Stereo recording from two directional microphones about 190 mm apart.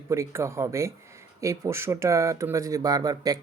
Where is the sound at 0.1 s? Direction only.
15° right (ahead or behind).